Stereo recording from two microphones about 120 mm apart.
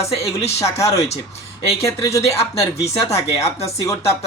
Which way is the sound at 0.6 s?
25° left (ahead or behind).